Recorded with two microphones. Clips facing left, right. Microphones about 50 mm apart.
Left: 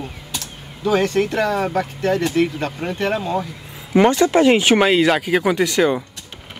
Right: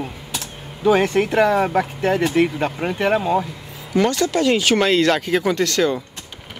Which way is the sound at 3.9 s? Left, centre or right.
Left.